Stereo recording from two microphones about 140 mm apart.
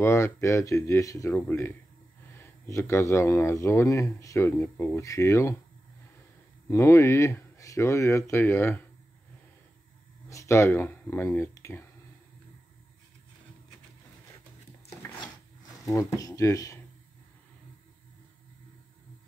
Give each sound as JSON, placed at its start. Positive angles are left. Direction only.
{"t": 0.0, "sound": "speech", "side_deg": 20}
{"t": 6.7, "sound": "speech", "side_deg": 20}
{"t": 10.3, "sound": "speech", "side_deg": 20}
{"t": 15.9, "sound": "speech", "side_deg": 25}